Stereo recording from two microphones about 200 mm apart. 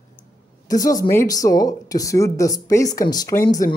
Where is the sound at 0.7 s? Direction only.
15° left (ahead or behind).